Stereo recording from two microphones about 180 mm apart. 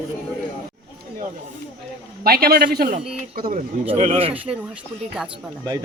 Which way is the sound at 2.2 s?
55° right (ahead or behind).